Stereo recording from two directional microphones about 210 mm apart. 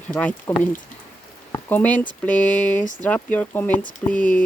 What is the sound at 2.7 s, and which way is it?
Speech, 40° left (ahead or behind).